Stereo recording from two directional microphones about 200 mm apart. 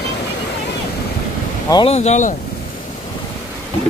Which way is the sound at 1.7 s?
20° left (ahead or behind).